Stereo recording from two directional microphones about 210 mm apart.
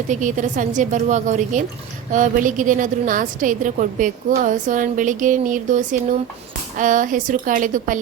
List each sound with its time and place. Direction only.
0.1 s a woman's voice: 35° right (ahead or behind)